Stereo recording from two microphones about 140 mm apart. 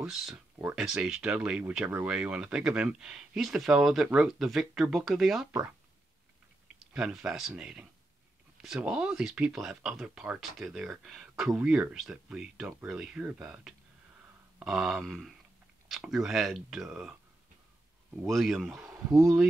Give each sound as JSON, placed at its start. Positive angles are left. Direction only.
{"t": 0.0, "sound": "speech", "side_deg": -5}
{"t": 6.9, "sound": "speech", "side_deg": -5}
{"t": 18.2, "sound": "speech", "side_deg": 0}
{"t": 18.9, "sound": "speech", "side_deg": -20}